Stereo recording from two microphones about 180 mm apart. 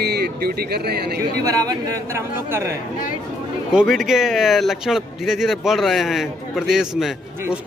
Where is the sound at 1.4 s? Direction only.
20° right (ahead or behind).